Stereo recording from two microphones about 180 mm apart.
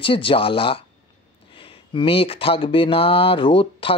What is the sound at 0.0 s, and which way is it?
Speech, 30° left (ahead or behind).